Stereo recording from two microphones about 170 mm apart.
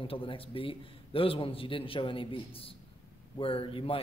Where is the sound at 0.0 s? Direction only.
30° left (ahead or behind).